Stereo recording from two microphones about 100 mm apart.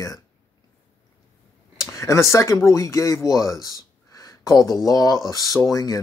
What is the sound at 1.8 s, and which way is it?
Speech, 30° left (ahead or behind).